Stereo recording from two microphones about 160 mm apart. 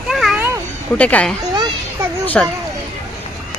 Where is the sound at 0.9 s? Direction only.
10° left (ahead or behind).